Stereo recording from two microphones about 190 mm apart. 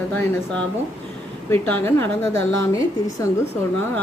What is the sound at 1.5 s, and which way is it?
A woman's voice, 10° left (ahead or behind).